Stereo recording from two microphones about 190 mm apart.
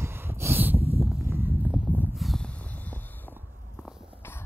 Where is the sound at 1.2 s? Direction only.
10° right (ahead or behind); by 3.3 s 10° left (ahead or behind).